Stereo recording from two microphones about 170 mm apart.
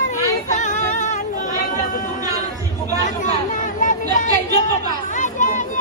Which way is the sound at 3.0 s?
45° left (ahead or behind).